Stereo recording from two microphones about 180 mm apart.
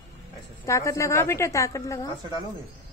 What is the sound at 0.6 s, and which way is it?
A woman's voice, 15° left (ahead or behind).